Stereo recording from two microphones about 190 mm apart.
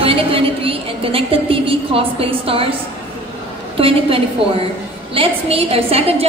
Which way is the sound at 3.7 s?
30° right (ahead or behind).